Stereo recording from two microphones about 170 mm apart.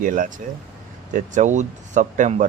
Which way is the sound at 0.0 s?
50° right (ahead or behind).